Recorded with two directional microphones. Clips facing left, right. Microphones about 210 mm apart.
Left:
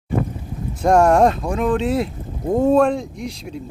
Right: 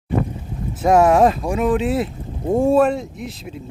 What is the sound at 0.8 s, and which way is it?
Speech, 5° right (ahead or behind).